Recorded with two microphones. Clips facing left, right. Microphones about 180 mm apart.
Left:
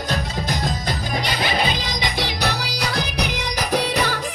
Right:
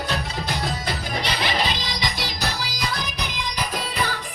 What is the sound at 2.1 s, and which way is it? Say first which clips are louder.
Music: left 5 dB; 65° left (ahead or behind).